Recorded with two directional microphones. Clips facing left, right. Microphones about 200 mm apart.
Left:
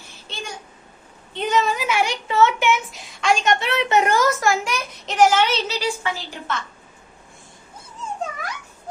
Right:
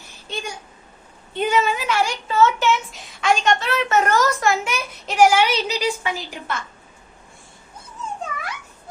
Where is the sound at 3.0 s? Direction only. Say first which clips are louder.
Even; centre (ahead or behind).